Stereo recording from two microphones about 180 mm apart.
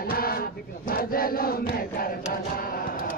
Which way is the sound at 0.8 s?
55° left (ahead or behind).